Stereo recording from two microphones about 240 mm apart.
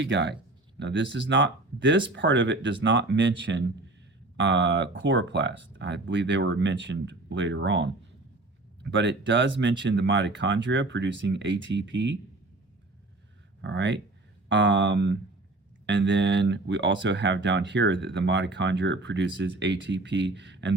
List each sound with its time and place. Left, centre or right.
0.0 s speech: right
13.6 s speech: right